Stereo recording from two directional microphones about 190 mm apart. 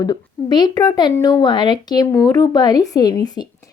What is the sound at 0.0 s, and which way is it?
Speech, 20° left (ahead or behind).